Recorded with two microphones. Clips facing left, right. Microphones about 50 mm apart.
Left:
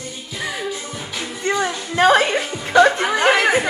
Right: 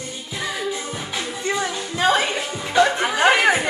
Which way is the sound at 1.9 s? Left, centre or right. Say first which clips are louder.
Left 5 dB; left.